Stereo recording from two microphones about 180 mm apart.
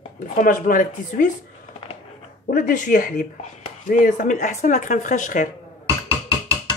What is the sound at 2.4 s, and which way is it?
Speech, 50° left (ahead or behind).